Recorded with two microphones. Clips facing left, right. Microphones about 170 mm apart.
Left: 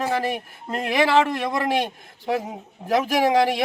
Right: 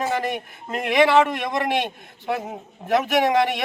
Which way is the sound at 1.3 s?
30° left (ahead or behind).